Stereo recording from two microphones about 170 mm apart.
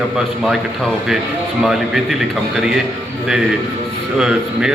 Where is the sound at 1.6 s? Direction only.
Centre (ahead or behind).